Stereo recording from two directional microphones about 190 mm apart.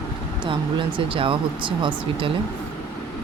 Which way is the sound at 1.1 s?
25° right (ahead or behind).